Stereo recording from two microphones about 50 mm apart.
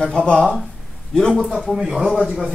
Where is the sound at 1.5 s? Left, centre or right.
Centre.